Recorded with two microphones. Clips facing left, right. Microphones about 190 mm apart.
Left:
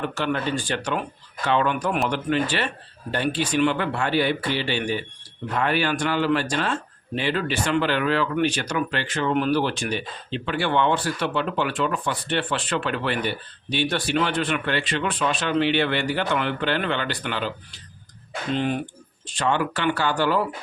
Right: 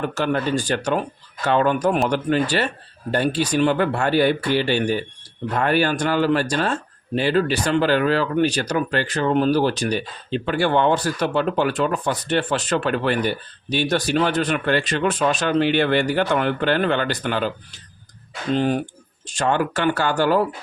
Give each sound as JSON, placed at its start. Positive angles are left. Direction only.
{"t": 0.0, "sound": "speech", "side_deg": -45}
{"t": 18.5, "sound": "speech", "side_deg": -35}